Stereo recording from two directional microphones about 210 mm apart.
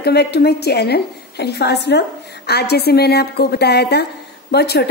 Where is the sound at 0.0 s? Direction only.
50° left (ahead or behind).